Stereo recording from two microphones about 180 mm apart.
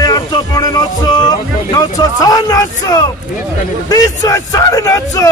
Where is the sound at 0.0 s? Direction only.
20° left (ahead or behind).